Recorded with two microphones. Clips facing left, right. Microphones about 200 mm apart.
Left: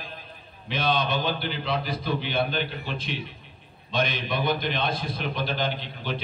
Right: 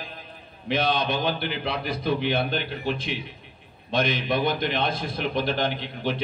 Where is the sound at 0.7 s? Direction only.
55° right (ahead or behind).